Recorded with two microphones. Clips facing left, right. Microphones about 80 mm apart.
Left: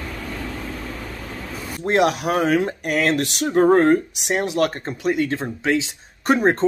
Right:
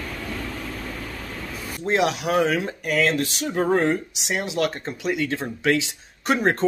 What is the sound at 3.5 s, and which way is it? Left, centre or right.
Speech, left.